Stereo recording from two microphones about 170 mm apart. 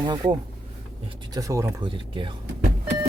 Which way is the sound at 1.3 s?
20° right (ahead or behind).